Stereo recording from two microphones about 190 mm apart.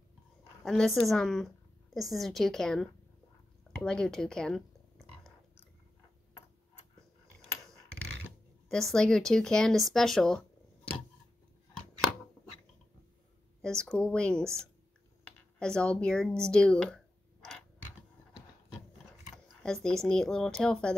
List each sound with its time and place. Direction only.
0.7 s a woman's voice: centre (ahead or behind)
3.8 s a sound: 5° left (ahead or behind)
8.2 s speech: centre (ahead or behind)
13.6 s a woman's voice: 5° left (ahead or behind)
15.2 s a sound: 5° left (ahead or behind)
19.3 s speech: 5° left (ahead or behind)